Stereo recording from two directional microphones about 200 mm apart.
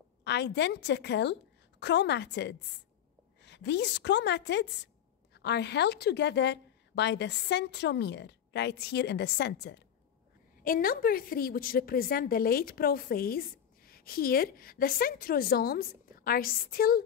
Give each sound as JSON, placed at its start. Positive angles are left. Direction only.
{"t": 0.2, "sound": "a woman's voice", "side_deg": 60}